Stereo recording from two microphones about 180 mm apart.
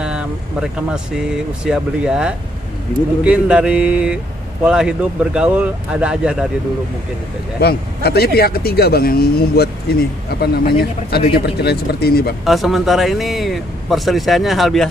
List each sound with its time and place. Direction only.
0.0 s speech: 5° right (ahead or behind)
7.6 s speech: 60° left (ahead or behind)
12.4 s speech: centre (ahead or behind)